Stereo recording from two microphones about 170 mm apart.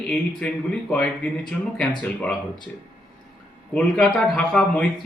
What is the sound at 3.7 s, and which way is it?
Speech, 5° left (ahead or behind).